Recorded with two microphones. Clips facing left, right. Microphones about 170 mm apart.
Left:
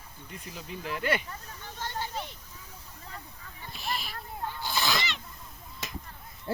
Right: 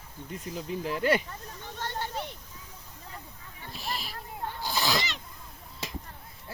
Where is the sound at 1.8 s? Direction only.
60° right (ahead or behind).